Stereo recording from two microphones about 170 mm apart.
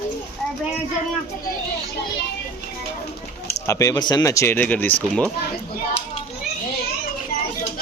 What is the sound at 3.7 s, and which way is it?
Speech, 20° left (ahead or behind).